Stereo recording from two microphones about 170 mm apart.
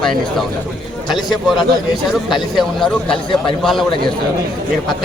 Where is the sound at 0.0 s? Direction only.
Centre (ahead or behind).